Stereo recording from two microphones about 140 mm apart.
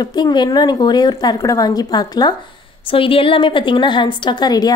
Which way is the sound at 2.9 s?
40° left (ahead or behind).